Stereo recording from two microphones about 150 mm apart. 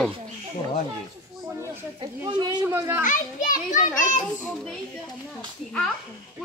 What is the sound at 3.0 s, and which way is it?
A child's voice, 60° left (ahead or behind).